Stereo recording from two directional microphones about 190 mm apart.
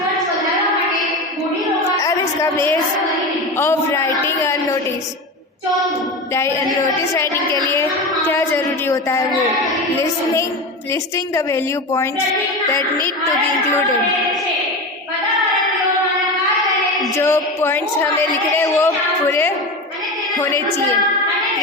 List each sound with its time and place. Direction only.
2.0 s a sound: 15° left (ahead or behind)
3.6 s a woman's voice: 15° left (ahead or behind)
8.3 s a woman's voice: 10° left (ahead or behind)
11.3 s a woman's voice: 15° left (ahead or behind)
17.2 s a woman's voice: 10° left (ahead or behind)